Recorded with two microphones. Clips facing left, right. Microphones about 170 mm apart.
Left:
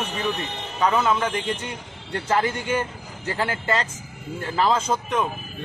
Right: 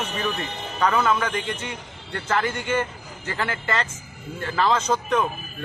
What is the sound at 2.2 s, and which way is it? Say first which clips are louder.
Speech: left 1 dB; 15° left (ahead or behind).